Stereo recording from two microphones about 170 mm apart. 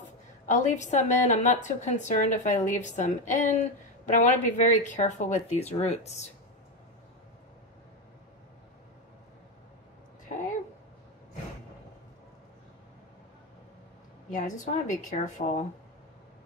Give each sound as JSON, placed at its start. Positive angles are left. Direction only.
{"t": 0.5, "sound": "a woman's voice", "side_deg": 45}
{"t": 10.3, "sound": "a sound", "side_deg": 45}
{"t": 14.3, "sound": "a woman's voice", "side_deg": 50}